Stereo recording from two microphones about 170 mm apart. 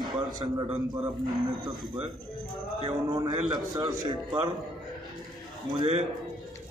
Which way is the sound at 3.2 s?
25° right (ahead or behind).